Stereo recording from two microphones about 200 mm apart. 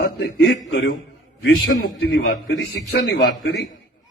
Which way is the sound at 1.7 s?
65° left (ahead or behind).